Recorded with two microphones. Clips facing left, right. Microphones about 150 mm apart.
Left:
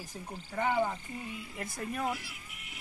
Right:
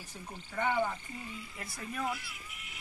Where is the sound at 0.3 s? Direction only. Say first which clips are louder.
Left 1 dB; 5° left (ahead or behind).